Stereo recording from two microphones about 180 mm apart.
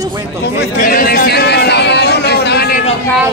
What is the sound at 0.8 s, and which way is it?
A man's voice, 50° left (ahead or behind).